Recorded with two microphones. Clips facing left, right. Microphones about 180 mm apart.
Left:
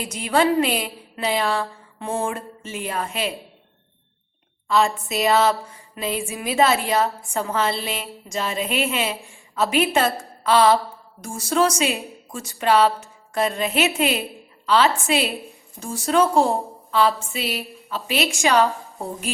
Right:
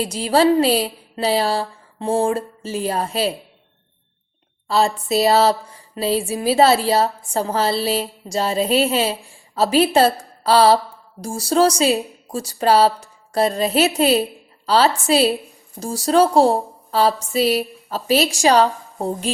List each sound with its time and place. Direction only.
0.0 s a woman's voice: 30° right (ahead or behind)
4.7 s a woman's voice: 35° right (ahead or behind)